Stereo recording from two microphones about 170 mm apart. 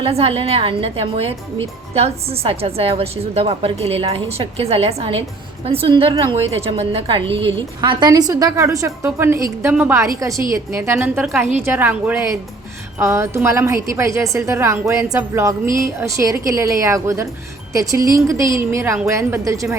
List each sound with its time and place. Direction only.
0.0 s a woman's voice: 35° right (ahead or behind); by 19.7 s 15° right (ahead or behind)